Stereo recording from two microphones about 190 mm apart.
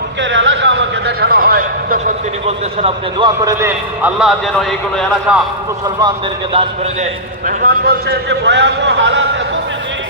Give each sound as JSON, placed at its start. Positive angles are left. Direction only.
{"t": 0.2, "sound": "a sound", "side_deg": -75}
{"t": 2.8, "sound": "speech", "side_deg": -25}
{"t": 4.0, "sound": "a man's voice", "side_deg": 0}
{"t": 6.5, "sound": "speech", "side_deg": -30}
{"t": 7.4, "sound": "a man's voice", "side_deg": -55}